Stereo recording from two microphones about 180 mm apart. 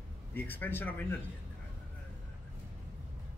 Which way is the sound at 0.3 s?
10° left (ahead or behind).